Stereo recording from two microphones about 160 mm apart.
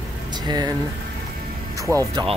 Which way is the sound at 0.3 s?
25° right (ahead or behind).